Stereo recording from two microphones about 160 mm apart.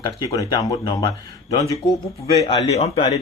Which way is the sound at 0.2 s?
20° left (ahead or behind).